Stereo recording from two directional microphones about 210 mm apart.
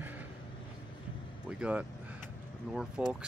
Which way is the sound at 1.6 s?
5° right (ahead or behind).